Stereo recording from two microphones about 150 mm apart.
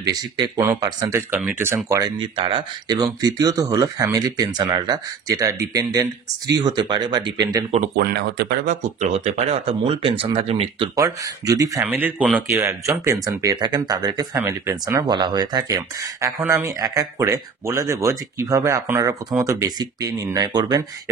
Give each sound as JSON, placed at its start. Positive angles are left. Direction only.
{"t": 0.0, "sound": "speech", "side_deg": -25}
{"t": 1.3, "sound": "speech", "side_deg": -15}
{"t": 2.1, "sound": "speech", "side_deg": -35}
{"t": 7.9, "sound": "speech", "side_deg": -90}
{"t": 9.0, "sound": "speech", "side_deg": -50}
{"t": 11.0, "sound": "speech", "side_deg": -20}